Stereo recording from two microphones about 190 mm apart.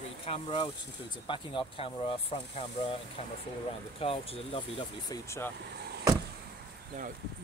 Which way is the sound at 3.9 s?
30° left (ahead or behind).